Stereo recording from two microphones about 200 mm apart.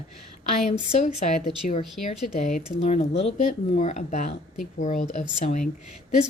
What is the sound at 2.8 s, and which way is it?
A woman's voice, 30° left (ahead or behind).